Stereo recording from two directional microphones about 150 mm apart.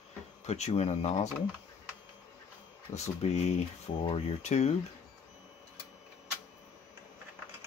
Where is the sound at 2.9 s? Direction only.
45° left (ahead or behind).